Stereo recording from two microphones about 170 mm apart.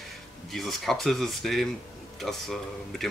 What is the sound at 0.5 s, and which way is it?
Speech, centre (ahead or behind).